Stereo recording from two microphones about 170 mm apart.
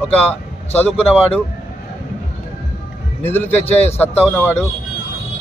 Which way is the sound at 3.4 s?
40° left (ahead or behind).